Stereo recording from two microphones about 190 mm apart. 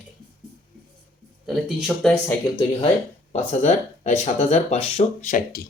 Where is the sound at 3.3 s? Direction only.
35° left (ahead or behind).